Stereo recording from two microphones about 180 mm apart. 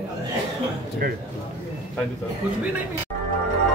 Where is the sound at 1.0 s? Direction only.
50° right (ahead or behind).